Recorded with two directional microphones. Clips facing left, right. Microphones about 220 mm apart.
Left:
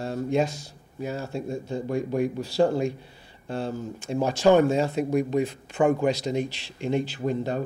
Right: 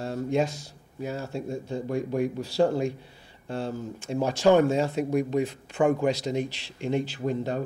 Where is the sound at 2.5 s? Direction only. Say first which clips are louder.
Left 1 dB; 30° left (ahead or behind).